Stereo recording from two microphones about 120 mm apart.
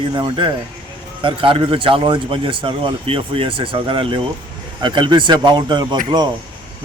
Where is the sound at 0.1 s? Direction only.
40° right (ahead or behind).